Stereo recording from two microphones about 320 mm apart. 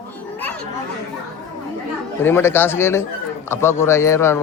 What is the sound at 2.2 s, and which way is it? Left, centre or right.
A man's voice, centre.